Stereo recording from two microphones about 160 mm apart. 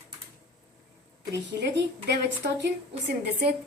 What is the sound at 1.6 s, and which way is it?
A woman's voice, 90° right.